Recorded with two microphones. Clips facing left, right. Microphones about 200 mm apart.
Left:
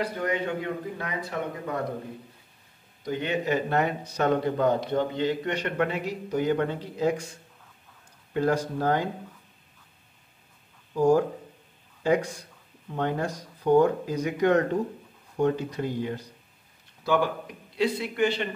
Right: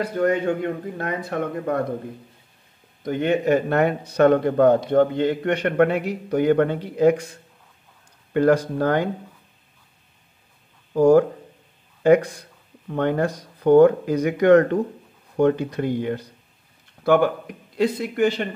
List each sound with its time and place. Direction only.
0.0 s speech: 45° right (ahead or behind)
3.1 s a man's voice: 55° right (ahead or behind)
8.3 s a man's voice: 65° right (ahead or behind)
10.9 s a man's voice: 60° right (ahead or behind)
17.7 s speech: 45° right (ahead or behind)